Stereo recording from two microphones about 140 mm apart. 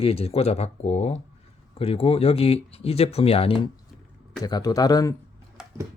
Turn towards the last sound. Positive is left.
turn(degrees=-5)  # may be behind; listen again after turning